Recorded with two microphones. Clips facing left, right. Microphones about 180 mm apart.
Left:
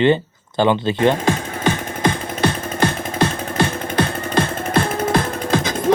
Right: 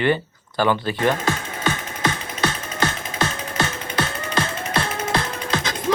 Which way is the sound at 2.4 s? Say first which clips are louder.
Left 5 dB; 55° left (ahead or behind).